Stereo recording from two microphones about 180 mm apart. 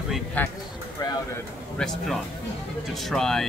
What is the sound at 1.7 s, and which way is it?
Speech, centre (ahead or behind).